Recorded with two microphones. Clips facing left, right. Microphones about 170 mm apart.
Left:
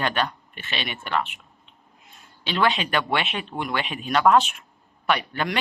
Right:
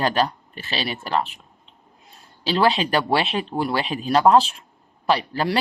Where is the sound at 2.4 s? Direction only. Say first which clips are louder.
Right 4 dB; 35° right (ahead or behind).